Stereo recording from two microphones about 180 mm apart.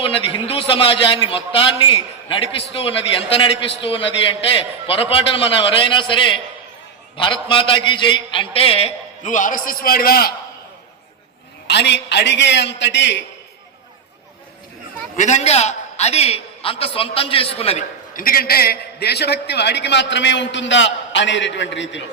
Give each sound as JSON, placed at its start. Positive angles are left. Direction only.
{"t": 0.0, "sound": "a man's voice", "side_deg": 30}
{"t": 11.7, "sound": "a man's voice", "side_deg": 70}
{"t": 15.1, "sound": "a man's voice", "side_deg": 40}
{"t": 18.1, "sound": "a man's voice", "side_deg": 50}